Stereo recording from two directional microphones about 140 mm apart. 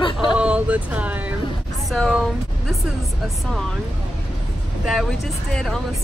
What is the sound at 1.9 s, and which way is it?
Speech, centre (ahead or behind).